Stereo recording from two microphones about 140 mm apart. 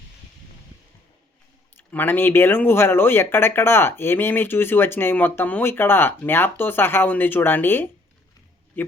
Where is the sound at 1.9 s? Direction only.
15° left (ahead or behind).